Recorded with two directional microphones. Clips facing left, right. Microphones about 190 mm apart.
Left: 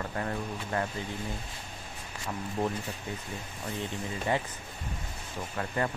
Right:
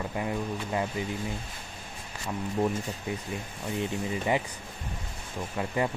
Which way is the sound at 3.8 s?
15° right (ahead or behind).